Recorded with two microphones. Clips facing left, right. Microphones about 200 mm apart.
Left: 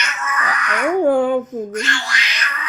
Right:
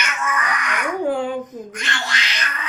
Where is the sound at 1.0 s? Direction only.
55° left (ahead or behind).